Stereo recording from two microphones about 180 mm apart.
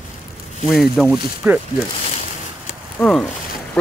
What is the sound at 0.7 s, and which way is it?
Speech, centre (ahead or behind).